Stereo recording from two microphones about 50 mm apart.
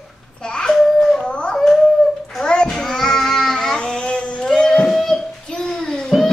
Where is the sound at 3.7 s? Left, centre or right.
Centre.